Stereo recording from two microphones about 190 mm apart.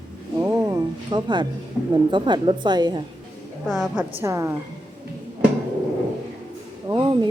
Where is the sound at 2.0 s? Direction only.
25° right (ahead or behind).